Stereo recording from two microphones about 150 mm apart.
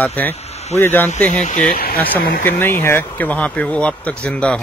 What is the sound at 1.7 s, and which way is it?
Speech, 90° left.